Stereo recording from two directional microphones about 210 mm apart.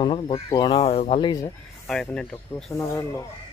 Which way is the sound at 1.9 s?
5° left (ahead or behind).